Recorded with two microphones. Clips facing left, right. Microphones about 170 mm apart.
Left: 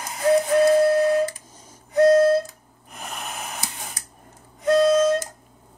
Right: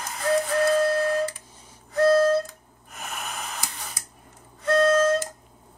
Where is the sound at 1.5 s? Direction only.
45° left (ahead or behind).